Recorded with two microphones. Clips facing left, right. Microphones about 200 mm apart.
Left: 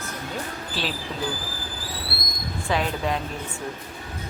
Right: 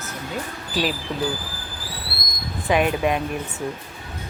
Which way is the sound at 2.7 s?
15° right (ahead or behind).